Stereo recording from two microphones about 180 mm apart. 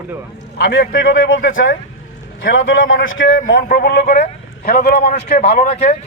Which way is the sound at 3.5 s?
55° left (ahead or behind).